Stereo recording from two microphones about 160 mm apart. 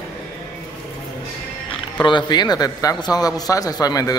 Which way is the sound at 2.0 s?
30° left (ahead or behind).